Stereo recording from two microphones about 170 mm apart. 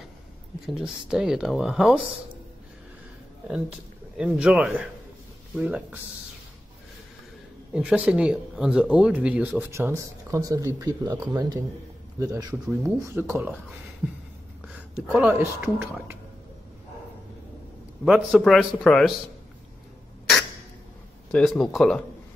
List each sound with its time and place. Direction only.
0.7 s speech: 5° right (ahead or behind)
4.2 s speech: 5° right (ahead or behind)
7.7 s speech: 5° right (ahead or behind)
15.1 s speech: 5° right (ahead or behind)
18.0 s speech: centre (ahead or behind)
21.3 s speech: 5° left (ahead or behind)